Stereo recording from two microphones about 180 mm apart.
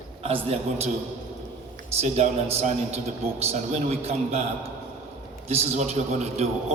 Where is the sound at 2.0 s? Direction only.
40° right (ahead or behind).